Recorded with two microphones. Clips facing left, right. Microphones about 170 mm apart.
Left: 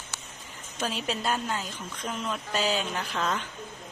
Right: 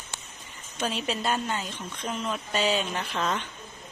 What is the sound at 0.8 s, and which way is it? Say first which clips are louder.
A woman's voice: right 1 dB; centre (ahead or behind).